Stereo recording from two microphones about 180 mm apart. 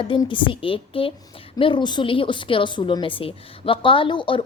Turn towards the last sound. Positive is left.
turn(degrees=25)  # may be behind; listen again after turning